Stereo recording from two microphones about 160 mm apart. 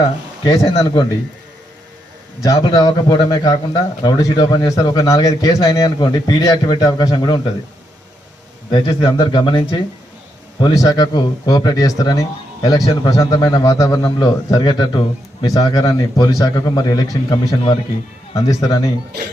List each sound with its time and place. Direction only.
0.4 s speech: 20° left (ahead or behind)
2.4 s speech: 20° left (ahead or behind)
8.7 s speech: 25° left (ahead or behind)
18.6 s speech: 20° left (ahead or behind)